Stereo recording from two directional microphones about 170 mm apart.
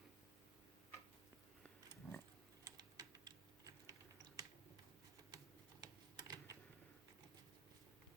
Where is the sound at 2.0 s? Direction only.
5° right (ahead or behind).